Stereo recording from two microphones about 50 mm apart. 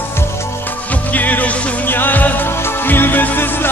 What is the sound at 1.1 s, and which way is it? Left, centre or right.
Music, left.